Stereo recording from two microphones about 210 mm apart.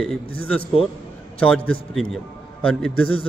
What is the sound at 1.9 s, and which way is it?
Speech, 5° left (ahead or behind).